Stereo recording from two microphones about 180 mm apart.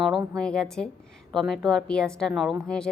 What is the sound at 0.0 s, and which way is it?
A woman's voice, centre (ahead or behind).